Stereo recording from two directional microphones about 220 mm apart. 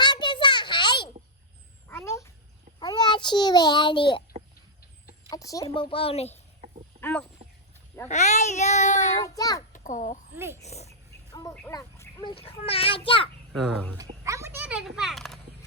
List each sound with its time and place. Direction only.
0.0 s a sound: 20° left (ahead or behind)
1.9 s babbling: 10° left (ahead or behind)
2.8 s a child's voice: 20° left (ahead or behind)
5.3 s a woman's voice: 15° left (ahead or behind)
7.0 s speech: 5° left (ahead or behind)
8.0 s speech: 30° left (ahead or behind)
9.2 s a child's voice: 15° left (ahead or behind)
9.7 s a child's voice: 35° left (ahead or behind)
10.3 s speech: 10° right (ahead or behind)
10.6 s a woman's voice: 30° left (ahead or behind)
11.3 s a sound: 20° left (ahead or behind)
12.3 s a woman's voice: 25° left (ahead or behind)
13.5 s speech: centre (ahead or behind)
14.3 s oink: 10° right (ahead or behind)